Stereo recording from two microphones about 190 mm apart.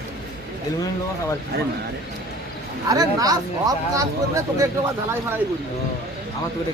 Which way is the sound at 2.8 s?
20° right (ahead or behind).